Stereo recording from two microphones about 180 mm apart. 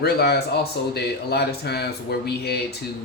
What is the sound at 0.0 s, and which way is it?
A man's voice, 65° left (ahead or behind).